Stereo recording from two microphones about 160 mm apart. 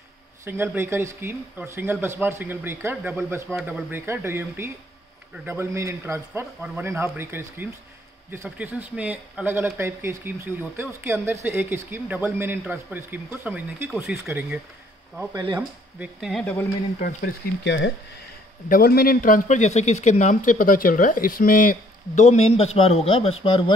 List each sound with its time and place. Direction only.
0.5 s speech: 15° right (ahead or behind)
15.3 s speech: 30° right (ahead or behind)
16.0 s speech: 5° right (ahead or behind)
17.0 s speech: 70° left (ahead or behind); by 23.6 s 35° left (ahead or behind)